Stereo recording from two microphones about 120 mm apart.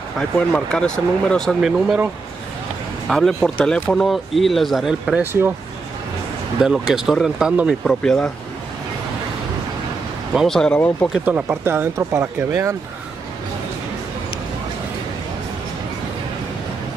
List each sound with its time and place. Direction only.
0.4 s speech: 5° left (ahead or behind)
3.1 s speech: 5° left (ahead or behind)
5.2 s speech: 20° right (ahead or behind)
6.6 s speech: 5° right (ahead or behind)
10.3 s speech: centre (ahead or behind)
11.2 s speech: 15° right (ahead or behind)